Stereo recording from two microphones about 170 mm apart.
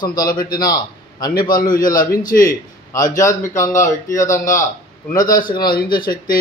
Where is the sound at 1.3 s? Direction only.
55° left (ahead or behind).